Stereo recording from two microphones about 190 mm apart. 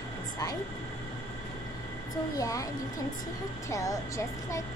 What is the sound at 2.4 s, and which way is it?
Speech, 15° left (ahead or behind).